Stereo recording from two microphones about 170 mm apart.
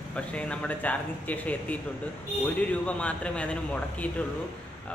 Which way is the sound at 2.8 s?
5° left (ahead or behind).